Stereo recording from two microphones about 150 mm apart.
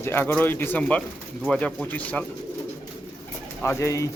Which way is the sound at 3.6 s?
20° left (ahead or behind).